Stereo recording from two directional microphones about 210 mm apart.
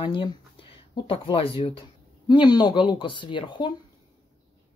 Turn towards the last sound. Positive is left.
turn(degrees=20)  # may be behind; listen again after turning